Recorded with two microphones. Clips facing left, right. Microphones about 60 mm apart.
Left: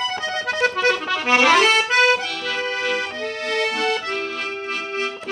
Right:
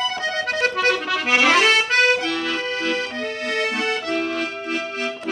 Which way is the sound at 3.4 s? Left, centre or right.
Right.